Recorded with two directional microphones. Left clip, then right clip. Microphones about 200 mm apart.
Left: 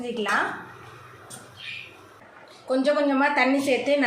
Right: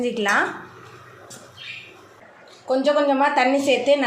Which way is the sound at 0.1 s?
35° right (ahead or behind).